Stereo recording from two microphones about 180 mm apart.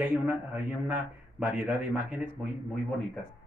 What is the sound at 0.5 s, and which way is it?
A man's voice, 10° right (ahead or behind).